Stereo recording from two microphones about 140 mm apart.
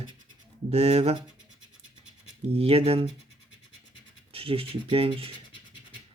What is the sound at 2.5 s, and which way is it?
Speech, 45° right (ahead or behind).